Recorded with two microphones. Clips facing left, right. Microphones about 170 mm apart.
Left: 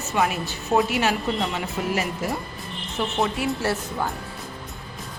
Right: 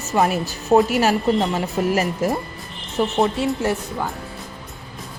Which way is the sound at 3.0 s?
40° right (ahead or behind).